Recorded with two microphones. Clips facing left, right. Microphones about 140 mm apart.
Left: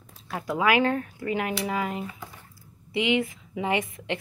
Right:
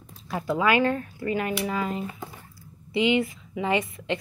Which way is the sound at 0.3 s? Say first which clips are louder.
Right 1 dB; 5° left (ahead or behind).